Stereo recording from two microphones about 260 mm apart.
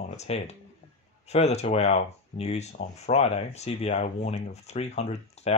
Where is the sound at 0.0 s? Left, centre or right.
Left.